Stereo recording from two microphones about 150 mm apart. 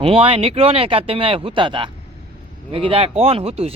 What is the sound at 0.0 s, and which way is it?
Speech, 40° right (ahead or behind).